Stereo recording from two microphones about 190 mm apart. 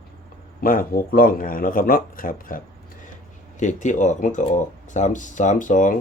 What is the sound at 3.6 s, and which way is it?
Speech, 40° left (ahead or behind).